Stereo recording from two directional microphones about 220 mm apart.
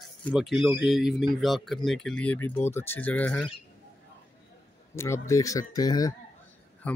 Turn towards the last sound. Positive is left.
turn(degrees=5)  # may be behind; listen again after turning